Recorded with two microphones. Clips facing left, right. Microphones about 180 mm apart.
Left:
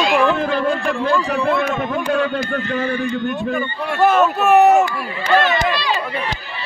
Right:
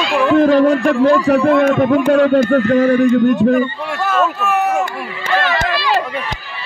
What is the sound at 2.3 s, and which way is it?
Speech, 45° right (ahead or behind).